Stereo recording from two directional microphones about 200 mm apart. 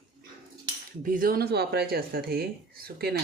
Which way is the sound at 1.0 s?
45° right (ahead or behind).